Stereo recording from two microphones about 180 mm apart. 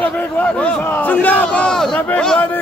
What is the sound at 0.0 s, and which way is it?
Battle cry, 10° left (ahead or behind).